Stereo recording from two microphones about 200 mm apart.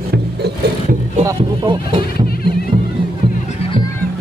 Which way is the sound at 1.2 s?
25° right (ahead or behind).